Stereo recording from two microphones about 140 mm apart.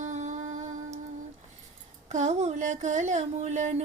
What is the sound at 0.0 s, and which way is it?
Music, 60° right (ahead or behind).